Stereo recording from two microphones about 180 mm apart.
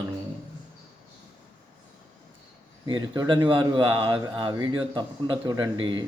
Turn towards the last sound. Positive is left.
turn(degrees=-25)  # may be behind; listen again after turning